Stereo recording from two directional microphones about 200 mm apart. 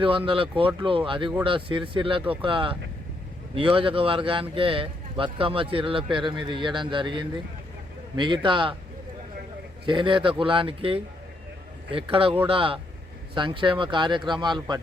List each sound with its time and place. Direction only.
0.0 s speech: 25° right (ahead or behind)
9.8 s speech: 25° right (ahead or behind)